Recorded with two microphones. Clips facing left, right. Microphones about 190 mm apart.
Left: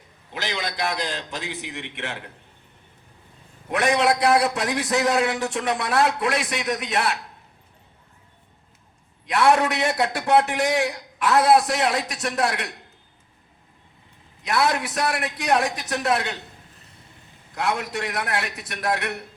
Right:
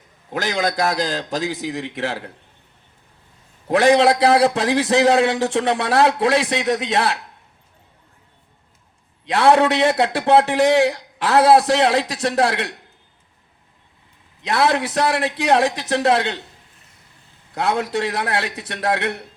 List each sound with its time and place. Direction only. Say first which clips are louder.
0.3 s a man's voice: right 8 dB; 45° right (ahead or behind)
3.7 s a man's voice: right 7 dB; 30° right (ahead or behind)
9.2 s a man's voice: right 4 dB; 30° right (ahead or behind)
14.4 s a man's voice: right 4 dB; 30° right (ahead or behind)
17.5 s a man's voice: right 5 dB; 30° right (ahead or behind)